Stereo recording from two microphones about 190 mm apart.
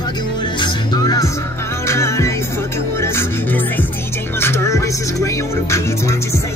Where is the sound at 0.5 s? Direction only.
25° left (ahead or behind).